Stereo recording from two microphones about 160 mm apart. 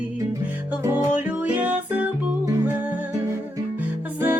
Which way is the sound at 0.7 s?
10° right (ahead or behind).